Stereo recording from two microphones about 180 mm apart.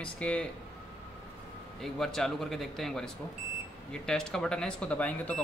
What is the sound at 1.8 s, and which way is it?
Speech, centre (ahead or behind).